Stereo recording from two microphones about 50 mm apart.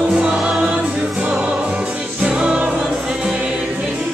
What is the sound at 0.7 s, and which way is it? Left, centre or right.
Music, centre.